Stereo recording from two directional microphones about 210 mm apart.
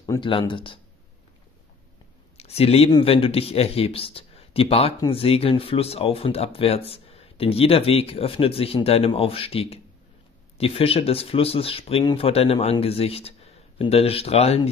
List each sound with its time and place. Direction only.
0.0 s speech: 20° left (ahead or behind)
2.3 s speech: 30° left (ahead or behind)